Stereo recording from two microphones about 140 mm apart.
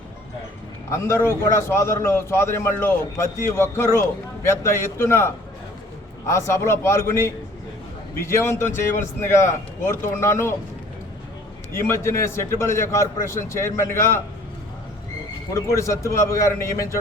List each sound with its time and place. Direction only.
0.9 s a man's voice: 20° left (ahead or behind)
11.7 s a man's voice: 20° left (ahead or behind)
15.5 s a man's voice: 20° left (ahead or behind)